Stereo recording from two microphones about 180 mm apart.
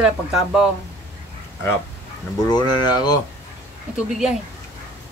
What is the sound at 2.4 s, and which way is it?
Speech, 20° left (ahead or behind).